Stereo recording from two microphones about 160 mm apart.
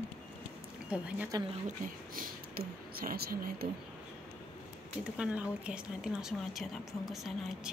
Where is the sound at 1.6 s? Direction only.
60° right (ahead or behind).